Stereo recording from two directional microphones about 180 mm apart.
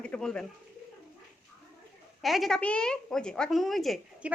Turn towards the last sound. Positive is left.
turn(degrees=-5)  # may be behind; listen again after turning